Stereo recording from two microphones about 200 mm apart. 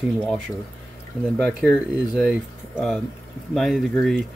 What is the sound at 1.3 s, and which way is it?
Speech, 5° left (ahead or behind).